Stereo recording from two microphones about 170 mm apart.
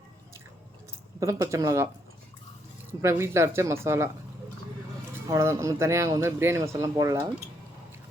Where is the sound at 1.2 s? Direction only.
15° right (ahead or behind).